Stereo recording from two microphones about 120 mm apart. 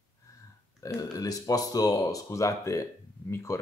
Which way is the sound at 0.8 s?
30° left (ahead or behind).